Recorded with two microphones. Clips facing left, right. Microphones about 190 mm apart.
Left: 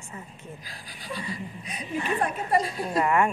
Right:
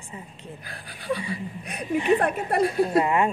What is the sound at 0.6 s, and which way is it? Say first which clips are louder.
Speech: right 3 dB; 60° right (ahead or behind).